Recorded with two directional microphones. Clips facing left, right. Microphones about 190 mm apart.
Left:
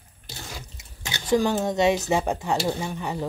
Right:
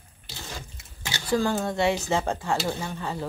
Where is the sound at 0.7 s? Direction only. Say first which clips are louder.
Even; 20° left (ahead or behind).